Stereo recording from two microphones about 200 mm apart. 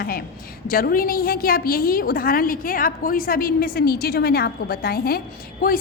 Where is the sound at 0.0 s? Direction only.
50° left (ahead or behind).